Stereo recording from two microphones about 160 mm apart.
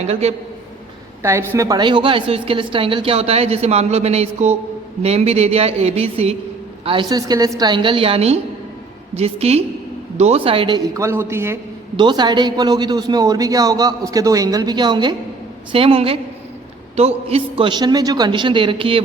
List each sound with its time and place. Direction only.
0.0 s a woman's voice: 40° right (ahead or behind)
1.2 s a woman's voice: 15° right (ahead or behind)
11.9 s a man's voice: 30° right (ahead or behind)